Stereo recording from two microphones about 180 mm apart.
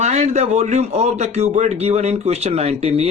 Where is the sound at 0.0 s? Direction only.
40° right (ahead or behind).